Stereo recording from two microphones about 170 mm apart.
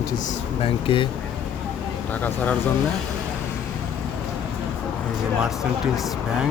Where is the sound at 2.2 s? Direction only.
10° left (ahead or behind).